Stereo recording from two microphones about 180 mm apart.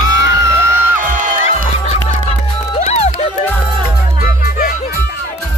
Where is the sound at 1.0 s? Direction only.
50° right (ahead or behind).